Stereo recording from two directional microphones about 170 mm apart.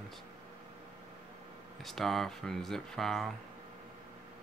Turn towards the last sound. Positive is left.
turn(degrees=0)  # may be behind; listen again after turning